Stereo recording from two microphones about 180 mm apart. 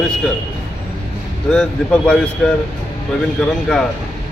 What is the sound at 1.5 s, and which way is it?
A man's voice, 5° left (ahead or behind).